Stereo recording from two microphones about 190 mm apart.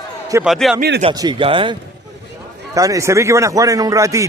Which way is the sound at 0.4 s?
Centre (ahead or behind).